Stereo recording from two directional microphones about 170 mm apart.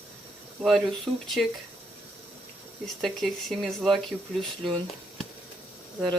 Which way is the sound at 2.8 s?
Centre (ahead or behind).